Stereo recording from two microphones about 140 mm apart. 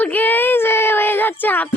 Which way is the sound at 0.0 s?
10° left (ahead or behind).